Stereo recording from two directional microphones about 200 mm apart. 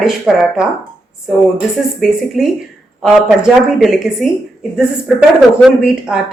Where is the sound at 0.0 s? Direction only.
5° right (ahead or behind).